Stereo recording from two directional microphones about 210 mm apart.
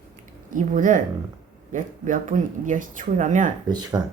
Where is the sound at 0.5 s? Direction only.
40° right (ahead or behind).